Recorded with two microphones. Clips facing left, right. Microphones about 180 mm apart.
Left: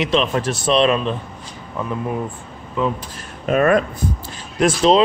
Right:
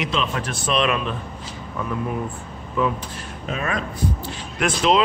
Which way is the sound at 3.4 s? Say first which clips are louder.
Left 12 dB; 55° left (ahead or behind).